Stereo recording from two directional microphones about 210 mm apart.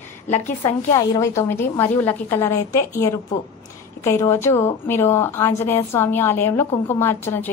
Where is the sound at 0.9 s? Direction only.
15° left (ahead or behind).